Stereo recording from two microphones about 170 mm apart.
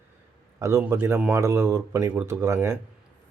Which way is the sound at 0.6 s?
15° right (ahead or behind).